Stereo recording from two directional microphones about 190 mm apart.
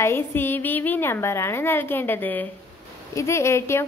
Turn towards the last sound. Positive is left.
turn(degrees=15)  # may be behind; listen again after turning